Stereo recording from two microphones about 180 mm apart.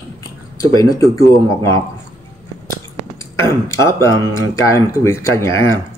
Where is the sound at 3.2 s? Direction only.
15° left (ahead or behind).